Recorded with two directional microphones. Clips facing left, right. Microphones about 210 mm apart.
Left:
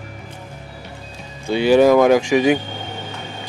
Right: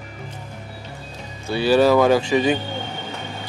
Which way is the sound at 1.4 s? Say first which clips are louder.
Left 3 dB; 15° left (ahead or behind).